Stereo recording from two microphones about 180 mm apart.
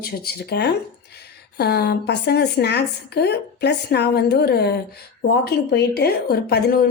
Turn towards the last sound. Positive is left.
turn(degrees=60)  # may be behind; listen again after turning